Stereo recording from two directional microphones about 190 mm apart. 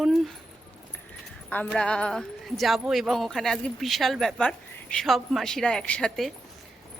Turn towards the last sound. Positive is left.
turn(degrees=5)  # may be behind; listen again after turning